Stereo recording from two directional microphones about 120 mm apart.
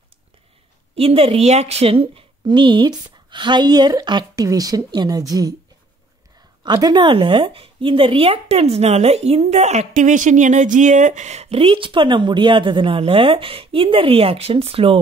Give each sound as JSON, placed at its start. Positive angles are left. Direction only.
{"t": 0.9, "sound": "speech", "side_deg": -55}
{"t": 6.6, "sound": "speech", "side_deg": -35}